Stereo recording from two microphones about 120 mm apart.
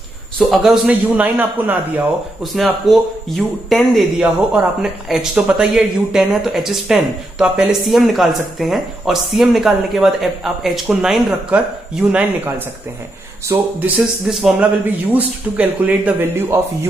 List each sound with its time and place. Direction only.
0.4 s speech: centre (ahead or behind)
2.4 s speech: centre (ahead or behind)
13.5 s speech: 25° right (ahead or behind)
13.9 s speech: centre (ahead or behind); by 16.5 s 20° right (ahead or behind)